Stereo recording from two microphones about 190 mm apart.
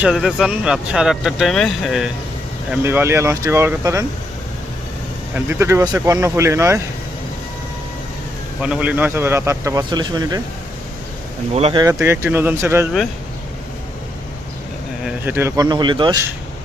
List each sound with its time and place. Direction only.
0.0 s speech: centre (ahead or behind)
2.6 s speech: 10° right (ahead or behind)
5.3 s speech: 10° right (ahead or behind)
8.6 s speech: 5° right (ahead or behind)
11.5 s speech: 30° right (ahead or behind)
11.8 s speech: 15° right (ahead or behind)
15.0 s speech: 10° right (ahead or behind)